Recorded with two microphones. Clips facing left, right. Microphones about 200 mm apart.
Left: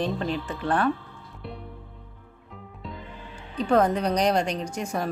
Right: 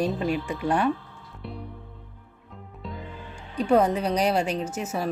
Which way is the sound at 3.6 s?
10° right (ahead or behind).